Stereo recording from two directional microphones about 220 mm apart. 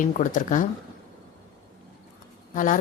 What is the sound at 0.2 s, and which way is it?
Speech, 35° left (ahead or behind).